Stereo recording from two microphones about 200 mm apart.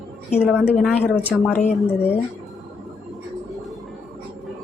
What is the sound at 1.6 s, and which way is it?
Speech, 35° left (ahead or behind).